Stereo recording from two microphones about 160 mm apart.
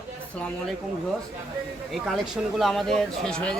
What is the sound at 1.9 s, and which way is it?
Speech, centre (ahead or behind).